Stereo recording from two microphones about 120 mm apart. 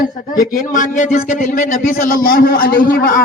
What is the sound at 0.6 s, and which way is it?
A man's voice, 90° left.